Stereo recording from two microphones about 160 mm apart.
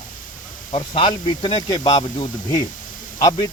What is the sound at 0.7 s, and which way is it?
Speech, 30° left (ahead or behind).